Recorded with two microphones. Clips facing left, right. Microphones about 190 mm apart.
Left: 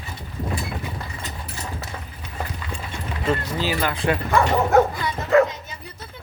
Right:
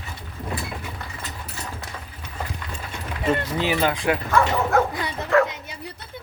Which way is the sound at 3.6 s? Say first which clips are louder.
Right 2 dB; 20° right (ahead or behind).